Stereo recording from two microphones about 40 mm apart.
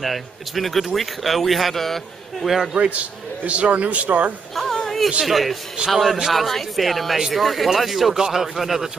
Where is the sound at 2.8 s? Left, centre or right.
Right.